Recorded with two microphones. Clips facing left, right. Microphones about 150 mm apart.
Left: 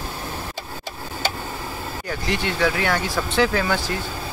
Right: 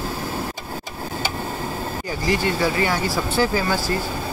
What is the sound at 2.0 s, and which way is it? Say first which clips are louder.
Speech: right 3 dB; 10° right (ahead or behind).